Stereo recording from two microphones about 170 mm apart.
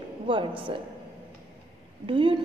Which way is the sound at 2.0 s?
30° right (ahead or behind).